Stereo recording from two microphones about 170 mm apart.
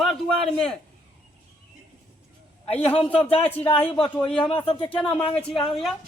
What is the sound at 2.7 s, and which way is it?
Speech, 10° left (ahead or behind).